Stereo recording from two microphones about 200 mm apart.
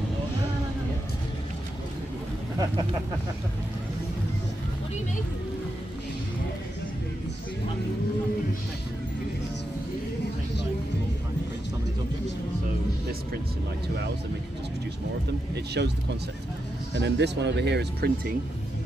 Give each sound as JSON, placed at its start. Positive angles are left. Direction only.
{"t": 15.5, "sound": "speech", "side_deg": -55}
{"t": 16.9, "sound": "speech", "side_deg": -60}